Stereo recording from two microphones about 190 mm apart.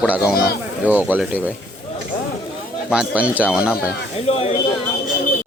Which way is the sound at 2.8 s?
5° right (ahead or behind).